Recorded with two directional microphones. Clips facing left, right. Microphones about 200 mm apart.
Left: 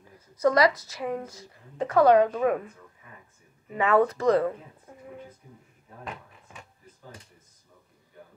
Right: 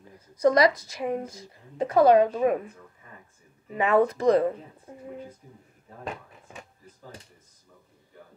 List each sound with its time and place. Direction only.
0.4 s a woman's voice: 15° right (ahead or behind)
2.2 s a woman's voice: 25° right (ahead or behind)
3.7 s a woman's voice: 15° right (ahead or behind)
4.9 s a sound: 25° right (ahead or behind)